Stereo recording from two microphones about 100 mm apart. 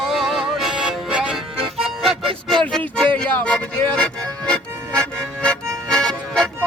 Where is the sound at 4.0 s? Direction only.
10° left (ahead or behind).